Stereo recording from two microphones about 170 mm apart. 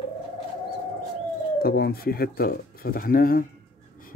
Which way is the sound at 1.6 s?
65° left (ahead or behind).